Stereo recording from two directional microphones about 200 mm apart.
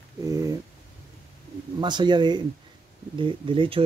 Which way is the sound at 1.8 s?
20° right (ahead or behind).